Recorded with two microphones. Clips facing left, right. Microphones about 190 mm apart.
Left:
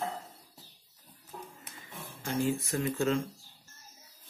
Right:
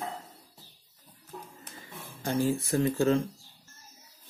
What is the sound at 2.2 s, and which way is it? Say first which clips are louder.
Speech: right 3 dB; 35° right (ahead or behind).